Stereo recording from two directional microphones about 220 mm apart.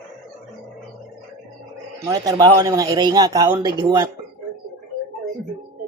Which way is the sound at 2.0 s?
15° right (ahead or behind).